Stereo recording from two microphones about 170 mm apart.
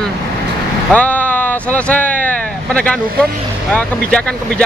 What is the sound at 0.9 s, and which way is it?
Vehicle, 10° left (ahead or behind).